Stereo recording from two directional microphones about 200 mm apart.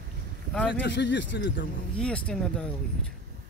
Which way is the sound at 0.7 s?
60° left (ahead or behind).